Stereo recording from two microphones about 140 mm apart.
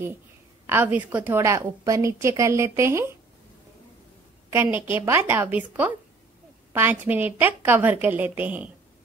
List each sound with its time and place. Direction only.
0.7 s a woman's voice: 15° right (ahead or behind)
4.5 s a woman's voice: 15° right (ahead or behind)